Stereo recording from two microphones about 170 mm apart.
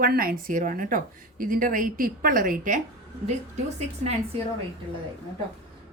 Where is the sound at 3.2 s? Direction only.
40° right (ahead or behind).